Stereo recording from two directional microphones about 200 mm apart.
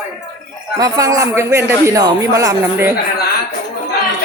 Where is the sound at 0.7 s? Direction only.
20° right (ahead or behind).